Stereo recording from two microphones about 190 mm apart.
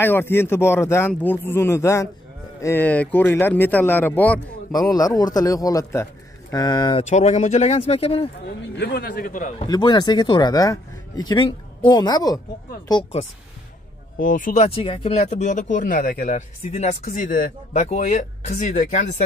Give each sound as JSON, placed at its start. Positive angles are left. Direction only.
{"t": 0.0, "sound": "a man's voice", "side_deg": 10}
{"t": 4.7, "sound": "speech", "side_deg": 20}
{"t": 7.1, "sound": "speech", "side_deg": 35}
{"t": 8.7, "sound": "speech", "side_deg": 60}
{"t": 9.7, "sound": "speech", "side_deg": 20}
{"t": 14.2, "sound": "speech", "side_deg": 45}